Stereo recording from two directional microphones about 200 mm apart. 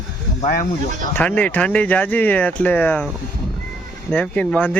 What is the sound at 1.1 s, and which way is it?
Speech, 5° left (ahead or behind).